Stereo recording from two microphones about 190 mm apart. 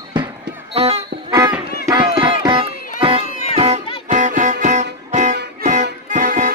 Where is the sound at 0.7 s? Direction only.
35° right (ahead or behind).